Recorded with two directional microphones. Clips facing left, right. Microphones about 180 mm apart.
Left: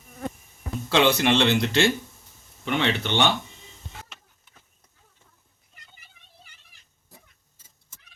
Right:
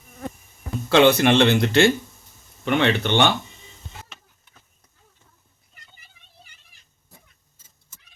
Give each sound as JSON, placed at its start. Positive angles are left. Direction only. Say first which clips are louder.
{"t": 0.9, "sound": "speech", "louder": "right 5 dB", "side_deg": -55}